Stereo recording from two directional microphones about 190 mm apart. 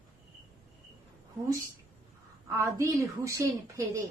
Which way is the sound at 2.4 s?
15° right (ahead or behind).